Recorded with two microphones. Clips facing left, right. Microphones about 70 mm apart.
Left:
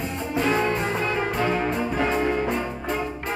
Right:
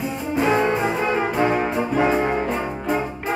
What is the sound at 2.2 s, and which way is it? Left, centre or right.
Music, right.